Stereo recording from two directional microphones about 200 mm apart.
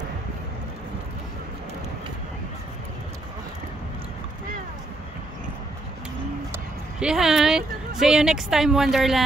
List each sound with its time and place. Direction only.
6.5 s speech: 5° right (ahead or behind)